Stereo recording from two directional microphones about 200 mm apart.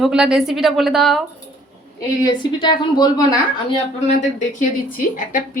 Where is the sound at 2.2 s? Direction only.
20° left (ahead or behind).